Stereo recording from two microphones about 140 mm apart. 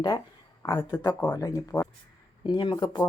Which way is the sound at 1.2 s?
20° left (ahead or behind).